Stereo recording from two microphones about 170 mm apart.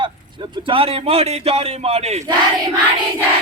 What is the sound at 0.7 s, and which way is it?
A man's voice, 35° right (ahead or behind).